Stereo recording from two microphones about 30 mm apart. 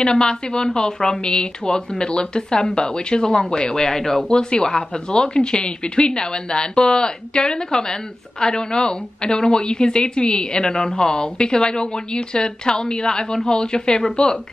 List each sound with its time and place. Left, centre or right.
0.0 s a woman's voice: left
4.0 s speech: centre
4.3 s a woman's voice: left